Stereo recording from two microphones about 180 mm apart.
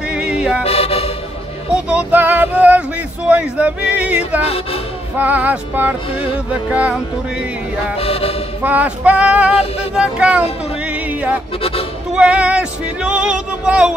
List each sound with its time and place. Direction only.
0.1 s music: 5° right (ahead or behind)
0.7 s music: 35° left (ahead or behind)
1.7 s music: 5° right (ahead or behind)
8.0 s music: 35° left (ahead or behind)
8.6 s music: 10° right (ahead or behind)